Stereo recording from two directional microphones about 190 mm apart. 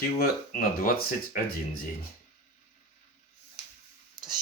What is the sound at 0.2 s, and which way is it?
Speech, 50° left (ahead or behind).